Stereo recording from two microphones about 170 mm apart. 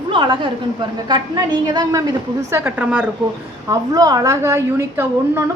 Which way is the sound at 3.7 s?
20° right (ahead or behind).